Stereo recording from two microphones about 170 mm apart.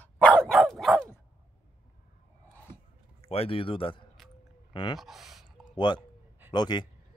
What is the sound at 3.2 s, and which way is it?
Speech, 35° left (ahead or behind).